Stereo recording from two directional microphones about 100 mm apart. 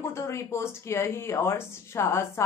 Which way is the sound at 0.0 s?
25° left (ahead or behind).